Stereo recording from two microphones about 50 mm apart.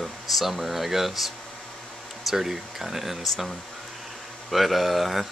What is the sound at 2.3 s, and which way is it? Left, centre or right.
Speech, centre.